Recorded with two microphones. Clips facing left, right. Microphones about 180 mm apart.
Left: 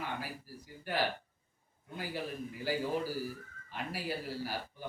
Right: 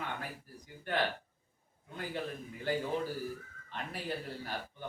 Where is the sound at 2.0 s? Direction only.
5° left (ahead or behind).